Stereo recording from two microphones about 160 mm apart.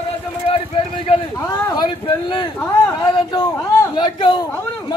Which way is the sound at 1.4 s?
25° left (ahead or behind).